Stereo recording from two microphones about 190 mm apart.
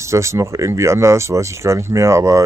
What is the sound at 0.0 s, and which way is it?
Speech, 15° right (ahead or behind).